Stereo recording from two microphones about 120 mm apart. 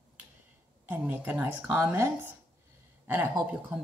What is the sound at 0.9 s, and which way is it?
Speech, 15° right (ahead or behind).